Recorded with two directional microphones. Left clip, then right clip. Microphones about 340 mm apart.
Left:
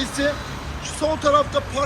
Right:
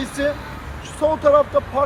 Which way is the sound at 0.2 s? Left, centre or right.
Right.